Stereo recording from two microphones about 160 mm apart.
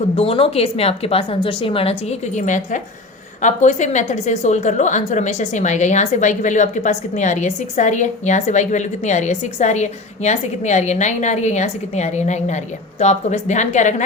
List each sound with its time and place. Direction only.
0.2 s a woman's voice: 35° left (ahead or behind)